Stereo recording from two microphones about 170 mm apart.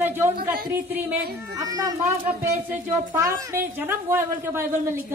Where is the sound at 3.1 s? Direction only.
15° right (ahead or behind).